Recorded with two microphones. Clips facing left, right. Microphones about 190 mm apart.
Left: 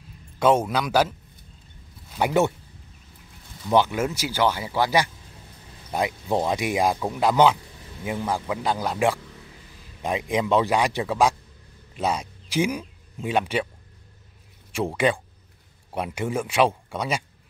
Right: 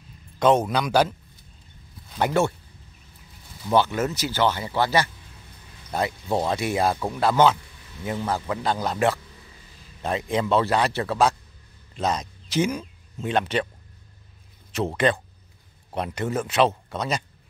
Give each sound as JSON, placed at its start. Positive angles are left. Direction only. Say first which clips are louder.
{"t": 0.4, "sound": "speech", "louder": "right 1 dB", "side_deg": 10}
{"t": 2.1, "sound": "speech", "louder": "left 1 dB", "side_deg": 15}
{"t": 3.7, "sound": "speech", "louder": "even", "side_deg": 10}
{"t": 14.7, "sound": "speech", "louder": "even", "side_deg": 10}